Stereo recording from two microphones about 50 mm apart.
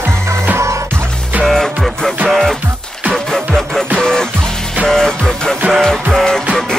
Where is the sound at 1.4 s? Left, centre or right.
Centre.